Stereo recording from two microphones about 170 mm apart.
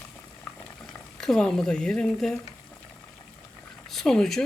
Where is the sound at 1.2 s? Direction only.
5° left (ahead or behind).